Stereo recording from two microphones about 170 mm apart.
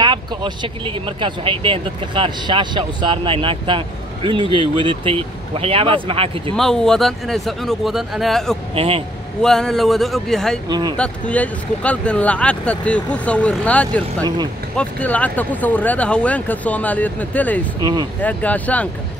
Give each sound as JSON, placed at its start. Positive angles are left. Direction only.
{"t": 0.0, "sound": "speech", "side_deg": -25}
{"t": 6.5, "sound": "a man's voice", "side_deg": 5}
{"t": 8.7, "sound": "speech", "side_deg": -35}
{"t": 9.4, "sound": "a man's voice", "side_deg": 5}
{"t": 10.7, "sound": "speech", "side_deg": -25}
{"t": 11.0, "sound": "speech", "side_deg": 10}